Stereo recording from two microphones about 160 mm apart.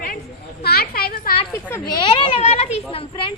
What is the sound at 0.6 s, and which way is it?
Speech, 80° left.